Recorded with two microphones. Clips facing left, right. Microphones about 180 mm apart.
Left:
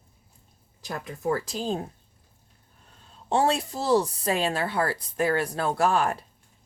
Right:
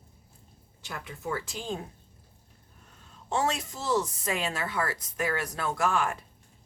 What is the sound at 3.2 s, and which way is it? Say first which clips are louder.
Speech: left 5 dB; 30° left (ahead or behind).